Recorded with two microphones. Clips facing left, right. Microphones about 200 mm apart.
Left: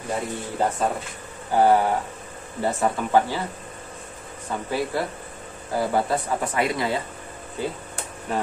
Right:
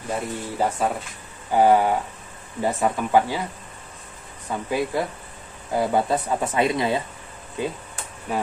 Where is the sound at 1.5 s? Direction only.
15° right (ahead or behind).